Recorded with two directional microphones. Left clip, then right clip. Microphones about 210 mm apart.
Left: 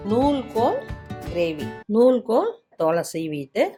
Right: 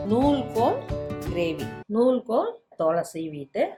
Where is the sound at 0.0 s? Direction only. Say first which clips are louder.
Left 2 dB; centre (ahead or behind).